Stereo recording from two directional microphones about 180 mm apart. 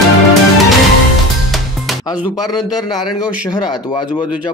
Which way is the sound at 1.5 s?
Centre (ahead or behind).